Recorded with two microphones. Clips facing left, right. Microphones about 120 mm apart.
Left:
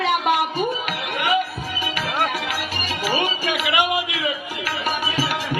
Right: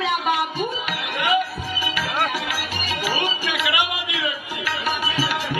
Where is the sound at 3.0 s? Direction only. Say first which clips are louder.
Left 3 dB; 50° left (ahead or behind).